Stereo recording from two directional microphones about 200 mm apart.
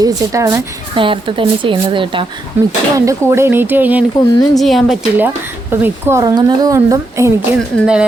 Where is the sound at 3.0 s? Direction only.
15° right (ahead or behind).